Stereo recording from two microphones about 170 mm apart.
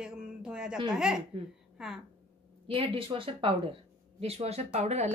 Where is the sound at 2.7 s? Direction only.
30° right (ahead or behind).